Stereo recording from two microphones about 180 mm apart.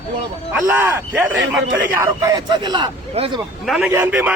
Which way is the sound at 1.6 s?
75° right (ahead or behind).